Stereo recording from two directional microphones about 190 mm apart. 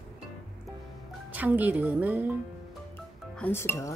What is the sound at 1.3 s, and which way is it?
Speech, 10° right (ahead or behind).